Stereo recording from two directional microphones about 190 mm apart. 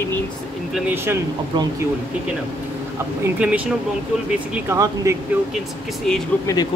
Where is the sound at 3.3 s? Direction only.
5° right (ahead or behind).